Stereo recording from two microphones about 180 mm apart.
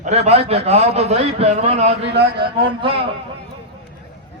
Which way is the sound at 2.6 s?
30° right (ahead or behind).